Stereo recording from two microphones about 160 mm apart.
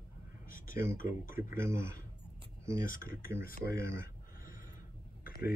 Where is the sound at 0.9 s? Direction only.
60° left (ahead or behind).